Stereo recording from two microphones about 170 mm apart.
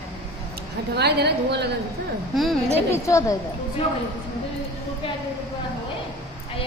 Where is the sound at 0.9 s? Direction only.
75° right (ahead or behind).